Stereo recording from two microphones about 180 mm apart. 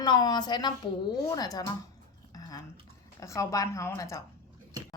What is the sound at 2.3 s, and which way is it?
Dishes, 20° left (ahead or behind).